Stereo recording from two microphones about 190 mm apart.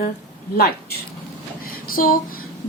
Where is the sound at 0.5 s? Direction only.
50° left (ahead or behind).